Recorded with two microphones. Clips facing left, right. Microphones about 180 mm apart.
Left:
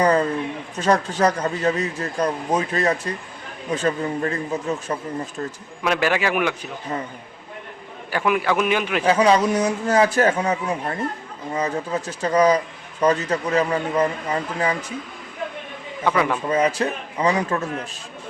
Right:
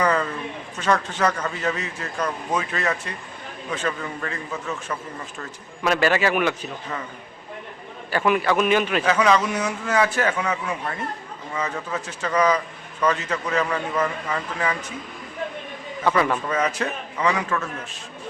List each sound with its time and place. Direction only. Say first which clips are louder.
0.0 s speech: left 4 dB; 35° left (ahead or behind)
5.8 s a man's voice: right 1 dB; 15° left (ahead or behind)
6.9 s speech: left 5 dB; 30° left (ahead or behind)
8.1 s a man's voice: even; 10° left (ahead or behind)
9.0 s speech: left 6 dB; 35° left (ahead or behind)
16.0 s a man's voice: even; 10° left (ahead or behind)
16.5 s speech: left 4 dB; 30° left (ahead or behind)